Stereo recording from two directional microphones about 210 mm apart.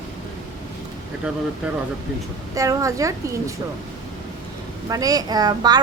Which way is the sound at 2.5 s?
15° right (ahead or behind).